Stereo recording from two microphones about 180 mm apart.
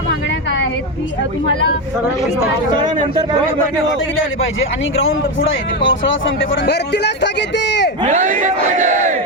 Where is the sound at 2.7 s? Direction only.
25° right (ahead or behind).